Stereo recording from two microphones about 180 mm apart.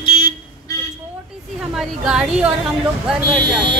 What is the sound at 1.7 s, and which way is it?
Speech, 5° right (ahead or behind).